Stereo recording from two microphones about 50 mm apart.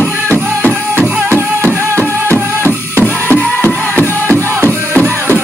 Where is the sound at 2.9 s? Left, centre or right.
Left.